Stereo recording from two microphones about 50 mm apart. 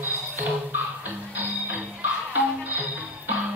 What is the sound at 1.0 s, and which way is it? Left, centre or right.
Music, right.